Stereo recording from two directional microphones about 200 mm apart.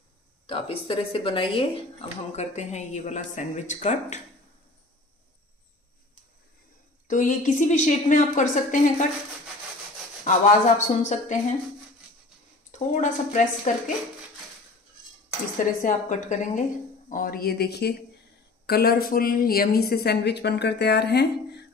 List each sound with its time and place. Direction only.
0.5 s speech: 25° left (ahead or behind)
7.1 s speech: 40° left (ahead or behind)
10.2 s speech: 35° left (ahead or behind)
12.7 s speech: 35° left (ahead or behind)
15.8 s speech: 40° left (ahead or behind); by 21.6 s 55° left (ahead or behind)